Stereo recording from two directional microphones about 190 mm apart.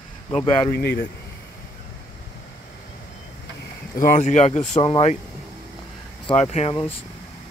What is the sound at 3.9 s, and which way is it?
Speech, 40° left (ahead or behind).